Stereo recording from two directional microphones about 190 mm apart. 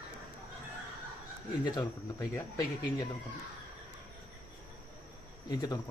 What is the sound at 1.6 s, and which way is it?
Speech, 20° left (ahead or behind).